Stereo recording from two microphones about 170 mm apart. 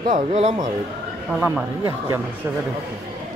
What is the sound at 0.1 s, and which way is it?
Speech, 40° right (ahead or behind).